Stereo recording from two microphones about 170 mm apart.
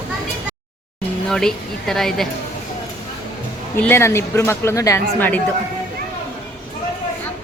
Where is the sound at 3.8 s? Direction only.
10° left (ahead or behind).